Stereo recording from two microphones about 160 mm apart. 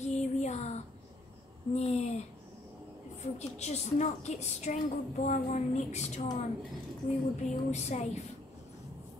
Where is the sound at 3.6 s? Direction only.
45° left (ahead or behind).